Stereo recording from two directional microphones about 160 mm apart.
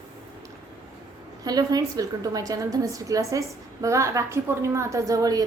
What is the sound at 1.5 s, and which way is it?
A woman's voice, 25° right (ahead or behind).